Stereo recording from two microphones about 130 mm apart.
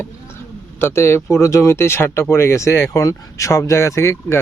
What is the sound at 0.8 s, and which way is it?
Speech, 20° left (ahead or behind).